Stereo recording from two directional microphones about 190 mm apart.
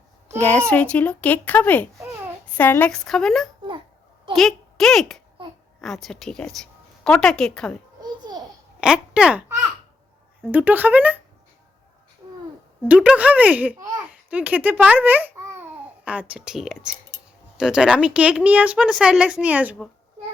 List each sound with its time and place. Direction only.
0.3 s a woman's voice: 5° left (ahead or behind)
8.0 s babbling: 20° right (ahead or behind)
8.8 s speech: 5° right (ahead or behind)
10.5 s speech: 10° right (ahead or behind)
12.9 s a child's voice: 5° right (ahead or behind)